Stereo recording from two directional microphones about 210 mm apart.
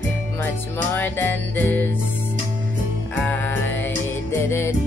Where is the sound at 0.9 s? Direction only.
10° left (ahead or behind).